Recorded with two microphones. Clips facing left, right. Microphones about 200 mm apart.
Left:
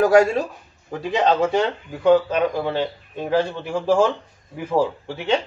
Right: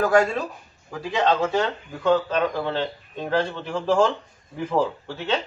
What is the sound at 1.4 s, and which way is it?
Speech, 15° left (ahead or behind).